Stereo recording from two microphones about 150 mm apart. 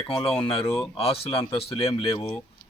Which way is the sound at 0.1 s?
40° left (ahead or behind).